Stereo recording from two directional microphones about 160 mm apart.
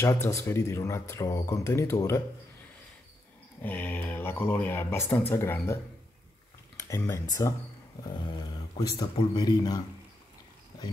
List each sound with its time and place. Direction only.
0.0 s speech: 20° left (ahead or behind)
3.6 s speech: 10° left (ahead or behind)
6.8 s speech: 20° left (ahead or behind)
8.7 s speech: 30° left (ahead or behind)